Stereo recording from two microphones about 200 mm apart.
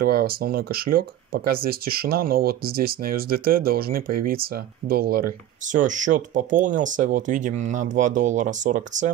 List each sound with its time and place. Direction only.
0.0 s speech: 50° right (ahead or behind)